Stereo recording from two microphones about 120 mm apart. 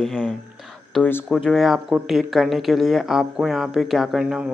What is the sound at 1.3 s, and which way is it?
Speech, 5° left (ahead or behind).